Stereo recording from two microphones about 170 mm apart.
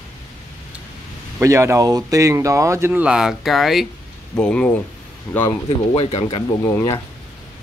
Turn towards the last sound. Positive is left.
turn(degrees=15)  # may be behind; listen again after turning